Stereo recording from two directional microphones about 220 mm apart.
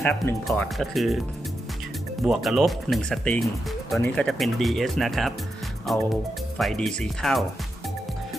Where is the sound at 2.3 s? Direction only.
Centre (ahead or behind).